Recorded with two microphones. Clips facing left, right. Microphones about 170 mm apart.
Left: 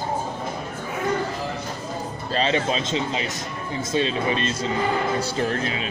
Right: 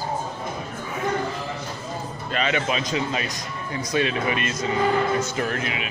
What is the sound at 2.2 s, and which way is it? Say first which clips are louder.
Speech: left 2 dB; 30° left (ahead or behind).